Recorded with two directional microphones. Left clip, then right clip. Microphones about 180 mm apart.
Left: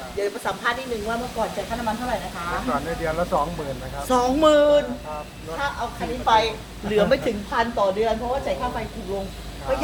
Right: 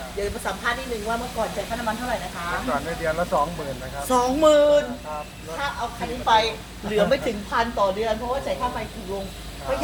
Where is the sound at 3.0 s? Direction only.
20° left (ahead or behind).